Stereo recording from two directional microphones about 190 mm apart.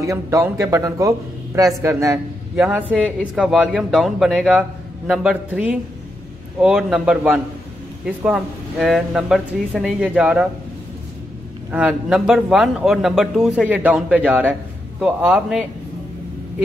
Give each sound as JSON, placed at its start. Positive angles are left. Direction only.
{"t": 0.0, "sound": "a man's voice", "side_deg": -15}
{"t": 11.7, "sound": "a man's voice", "side_deg": -5}